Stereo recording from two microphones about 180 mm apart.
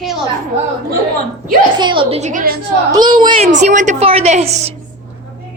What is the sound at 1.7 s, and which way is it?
Speech, 25° right (ahead or behind).